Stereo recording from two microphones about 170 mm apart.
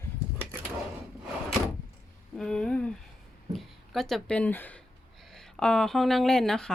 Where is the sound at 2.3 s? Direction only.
5° left (ahead or behind).